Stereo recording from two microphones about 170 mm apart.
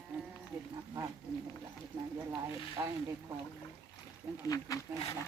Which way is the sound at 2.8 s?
20° right (ahead or behind).